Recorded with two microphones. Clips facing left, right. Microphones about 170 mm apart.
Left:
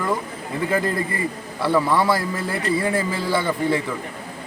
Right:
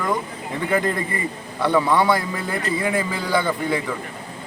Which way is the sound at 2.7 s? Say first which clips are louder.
Left 2 dB; 30° left (ahead or behind).